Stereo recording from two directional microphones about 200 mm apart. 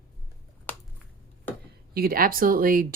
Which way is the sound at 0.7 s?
5° left (ahead or behind).